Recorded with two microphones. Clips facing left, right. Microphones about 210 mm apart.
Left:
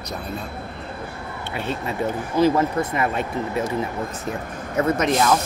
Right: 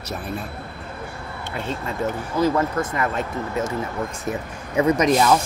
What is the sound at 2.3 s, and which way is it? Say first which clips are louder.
Speech: left 2 dB; 20° left (ahead or behind).